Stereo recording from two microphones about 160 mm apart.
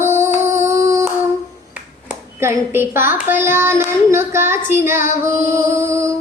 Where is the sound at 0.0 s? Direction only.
15° right (ahead or behind).